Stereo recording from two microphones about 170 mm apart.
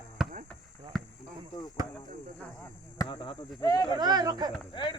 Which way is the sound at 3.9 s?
25° right (ahead or behind).